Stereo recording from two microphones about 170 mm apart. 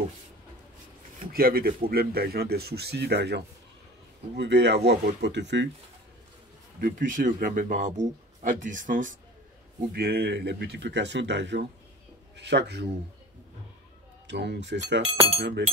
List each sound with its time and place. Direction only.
1.2 s a man's voice: 60° right (ahead or behind); by 5.7 s 90° right
6.8 s speech: 50° right (ahead or behind)
9.9 s speech: 65° right (ahead or behind); by 12.8 s 90° right
14.2 s speech: 90° right
15.0 s speech: 40° right (ahead or behind)